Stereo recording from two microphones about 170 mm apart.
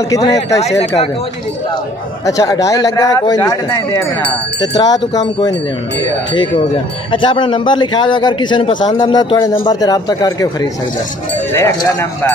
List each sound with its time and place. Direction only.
0.1 s a man's voice: 20° left (ahead or behind)
0.6 s speech: 40° left (ahead or behind)
2.2 s a man's voice: 20° left (ahead or behind)